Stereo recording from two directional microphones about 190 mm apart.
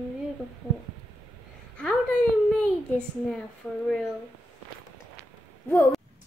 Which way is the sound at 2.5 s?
5° left (ahead or behind).